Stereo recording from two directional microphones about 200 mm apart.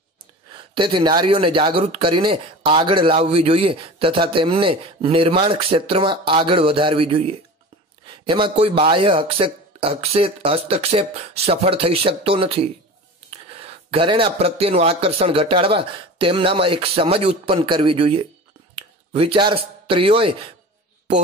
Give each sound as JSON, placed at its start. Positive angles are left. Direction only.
{"t": 0.7, "sound": "speech", "side_deg": -25}